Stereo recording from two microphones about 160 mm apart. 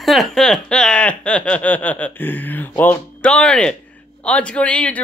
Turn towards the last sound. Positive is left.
turn(degrees=10)  # may be behind; listen again after turning